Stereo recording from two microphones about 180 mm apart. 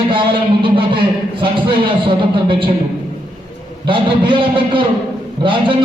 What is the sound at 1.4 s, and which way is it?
Speech, 30° right (ahead or behind).